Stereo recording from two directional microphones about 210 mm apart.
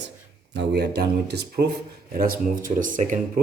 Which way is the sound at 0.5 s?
55° right (ahead or behind).